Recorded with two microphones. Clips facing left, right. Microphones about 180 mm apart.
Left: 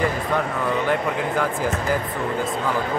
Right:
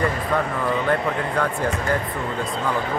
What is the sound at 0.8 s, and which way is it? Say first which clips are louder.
Speech: even; centre (ahead or behind).